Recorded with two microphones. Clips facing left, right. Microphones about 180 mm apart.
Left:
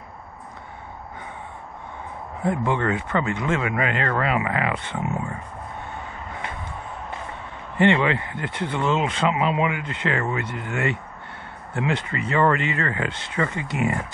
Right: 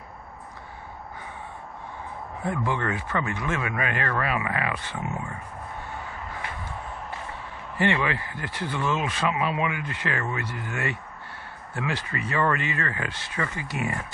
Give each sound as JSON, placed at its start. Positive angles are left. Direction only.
{"t": 2.4, "sound": "speech", "side_deg": 25}
{"t": 7.7, "sound": "speech", "side_deg": 25}